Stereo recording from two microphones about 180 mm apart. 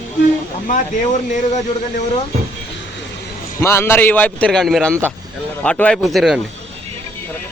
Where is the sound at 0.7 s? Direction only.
45° left (ahead or behind).